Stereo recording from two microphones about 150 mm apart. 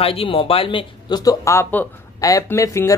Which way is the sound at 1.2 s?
20° left (ahead or behind).